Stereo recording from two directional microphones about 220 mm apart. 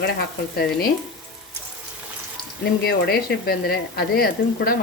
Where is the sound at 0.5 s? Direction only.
45° left (ahead or behind).